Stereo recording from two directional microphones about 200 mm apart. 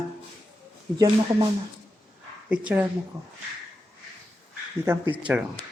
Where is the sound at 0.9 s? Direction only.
20° right (ahead or behind).